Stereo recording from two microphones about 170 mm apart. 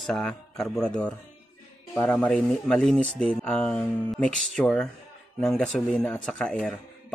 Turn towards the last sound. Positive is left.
turn(degrees=0)  # may be behind; listen again after turning